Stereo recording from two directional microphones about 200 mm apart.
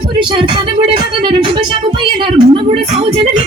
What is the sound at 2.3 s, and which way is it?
Speech, 25° right (ahead or behind).